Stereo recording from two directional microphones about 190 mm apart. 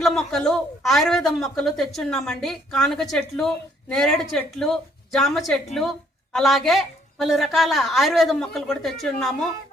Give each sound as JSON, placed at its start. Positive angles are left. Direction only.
{"t": 0.0, "sound": "speech", "side_deg": 0}